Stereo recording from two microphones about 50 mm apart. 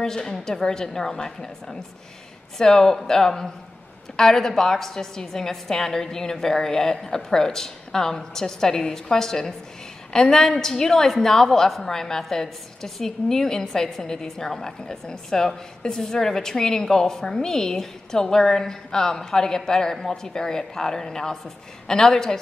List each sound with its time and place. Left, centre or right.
0.0 s a woman's voice: centre